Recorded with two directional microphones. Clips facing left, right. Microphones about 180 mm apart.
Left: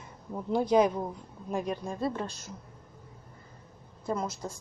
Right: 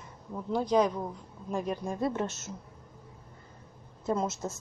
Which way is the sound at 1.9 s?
20° right (ahead or behind).